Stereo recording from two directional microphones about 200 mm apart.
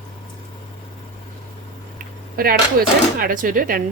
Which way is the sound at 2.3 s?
45° right (ahead or behind).